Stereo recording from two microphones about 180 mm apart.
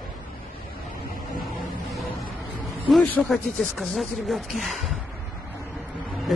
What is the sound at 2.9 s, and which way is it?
Speech, 5° left (ahead or behind).